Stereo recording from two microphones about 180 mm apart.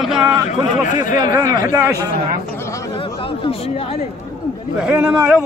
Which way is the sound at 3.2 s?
30° left (ahead or behind).